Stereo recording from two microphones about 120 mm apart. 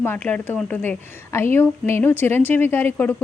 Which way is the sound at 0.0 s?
15° left (ahead or behind).